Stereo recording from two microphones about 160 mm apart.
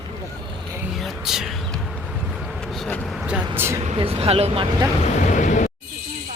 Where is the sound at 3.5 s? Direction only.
15° right (ahead or behind).